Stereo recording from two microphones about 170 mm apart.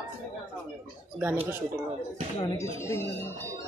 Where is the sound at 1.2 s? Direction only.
10° right (ahead or behind).